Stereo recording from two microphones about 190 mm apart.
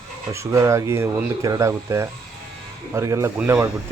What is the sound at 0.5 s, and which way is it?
A man's voice, 15° right (ahead or behind).